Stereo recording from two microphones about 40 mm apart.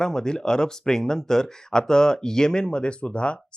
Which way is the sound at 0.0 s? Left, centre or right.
Centre.